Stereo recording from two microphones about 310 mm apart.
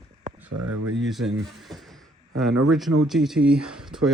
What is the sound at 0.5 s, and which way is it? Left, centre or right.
Speech, right.